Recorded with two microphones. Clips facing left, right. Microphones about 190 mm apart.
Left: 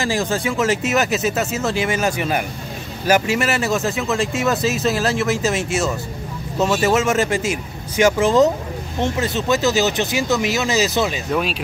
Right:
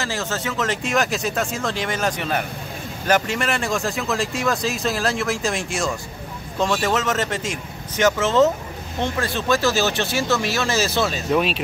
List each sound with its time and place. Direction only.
0.0 s speech: 15° left (ahead or behind)